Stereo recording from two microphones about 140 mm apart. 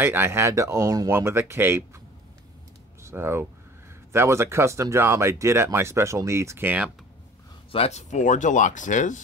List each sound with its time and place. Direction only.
0.0 s speech: 15° right (ahead or behind)
3.0 s speech: 20° right (ahead or behind)
7.7 s speech: 50° left (ahead or behind); by 9.2 s 65° left (ahead or behind)